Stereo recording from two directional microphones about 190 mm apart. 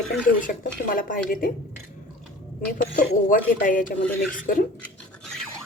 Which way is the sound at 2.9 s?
45° left (ahead or behind).